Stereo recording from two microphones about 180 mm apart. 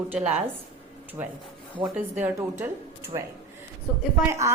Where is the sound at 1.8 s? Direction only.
10° right (ahead or behind).